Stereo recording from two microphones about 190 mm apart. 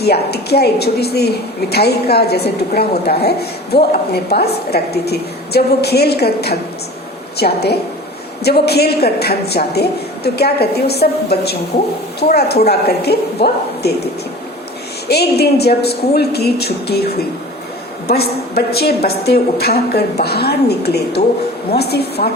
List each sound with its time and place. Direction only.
0.0 s a woman's voice: 60° left (ahead or behind)
15.0 s a woman's voice: 60° left (ahead or behind)